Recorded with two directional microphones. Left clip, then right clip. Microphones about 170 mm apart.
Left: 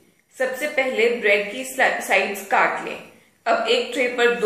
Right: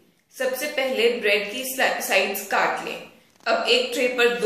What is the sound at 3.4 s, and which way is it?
Speech, 25° left (ahead or behind).